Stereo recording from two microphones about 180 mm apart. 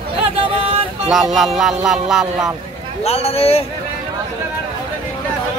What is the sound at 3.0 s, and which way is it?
Speech, 35° left (ahead or behind).